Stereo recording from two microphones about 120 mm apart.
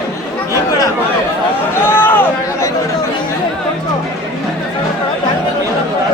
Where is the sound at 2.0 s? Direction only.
15° left (ahead or behind).